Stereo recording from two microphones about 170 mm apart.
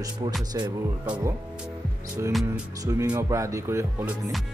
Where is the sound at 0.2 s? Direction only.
20° right (ahead or behind).